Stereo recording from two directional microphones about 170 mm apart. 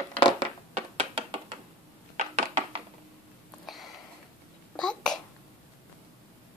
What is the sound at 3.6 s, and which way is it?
Sniff, centre (ahead or behind).